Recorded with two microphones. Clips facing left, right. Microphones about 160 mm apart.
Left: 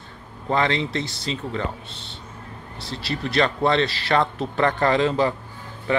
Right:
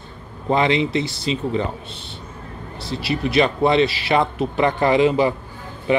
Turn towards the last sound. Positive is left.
turn(degrees=-10)  # may be behind; listen again after turning